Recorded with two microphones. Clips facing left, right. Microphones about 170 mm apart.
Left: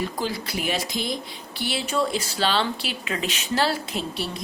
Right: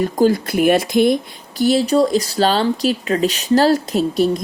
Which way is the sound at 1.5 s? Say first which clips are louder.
Right 11 dB; 40° right (ahead or behind).